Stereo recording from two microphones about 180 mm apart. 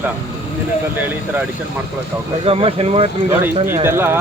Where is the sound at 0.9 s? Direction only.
10° right (ahead or behind).